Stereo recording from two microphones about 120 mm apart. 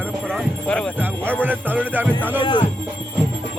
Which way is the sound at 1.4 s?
15° right (ahead or behind).